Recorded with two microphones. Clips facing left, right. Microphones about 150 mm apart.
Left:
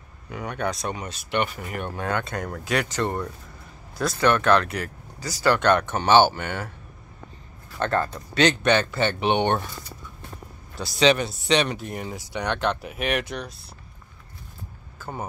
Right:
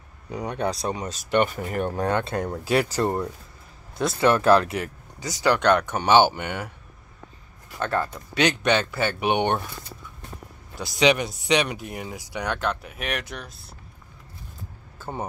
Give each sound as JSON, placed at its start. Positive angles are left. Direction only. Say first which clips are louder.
{"t": 0.3, "sound": "speech", "louder": "right 2 dB", "side_deg": -30}
{"t": 4.8, "sound": "a sound", "louder": "right 1 dB", "side_deg": -20}
{"t": 5.5, "sound": "speech", "louder": "even", "side_deg": -10}
{"t": 7.8, "sound": "speech", "louder": "left 2 dB", "side_deg": -10}
{"t": 10.8, "sound": "speech", "louder": "left 1 dB", "side_deg": -15}